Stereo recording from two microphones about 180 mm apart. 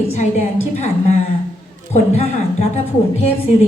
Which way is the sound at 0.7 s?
35° left (ahead or behind).